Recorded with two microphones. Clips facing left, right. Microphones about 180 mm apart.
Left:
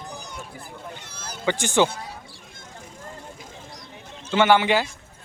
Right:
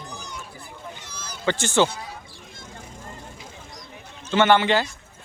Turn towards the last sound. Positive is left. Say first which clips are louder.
# even
turn(degrees=10)  # may be behind; listen again after turning